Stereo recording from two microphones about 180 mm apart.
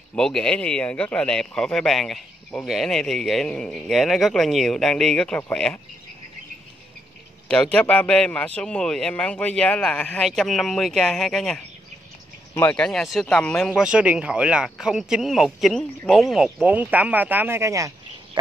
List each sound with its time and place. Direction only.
0.1 s speech: 5° left (ahead or behind)
7.7 s a man's voice: 10° left (ahead or behind)
13.7 s speech: 5° right (ahead or behind)